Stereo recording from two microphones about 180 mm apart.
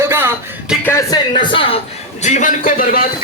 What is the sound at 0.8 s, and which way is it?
Speech, 15° left (ahead or behind).